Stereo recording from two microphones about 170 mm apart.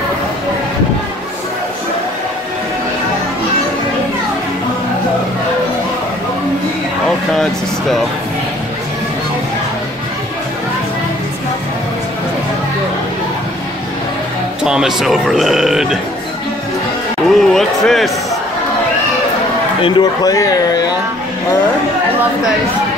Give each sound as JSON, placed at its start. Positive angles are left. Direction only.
{"t": 14.6, "sound": "speech", "side_deg": -5}
{"t": 17.3, "sound": "music", "side_deg": 0}
{"t": 19.8, "sound": "speech", "side_deg": 25}